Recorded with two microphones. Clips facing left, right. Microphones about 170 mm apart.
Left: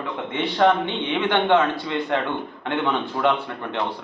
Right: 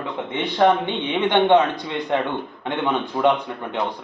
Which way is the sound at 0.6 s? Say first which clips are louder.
Right 1 dB; 15° right (ahead or behind).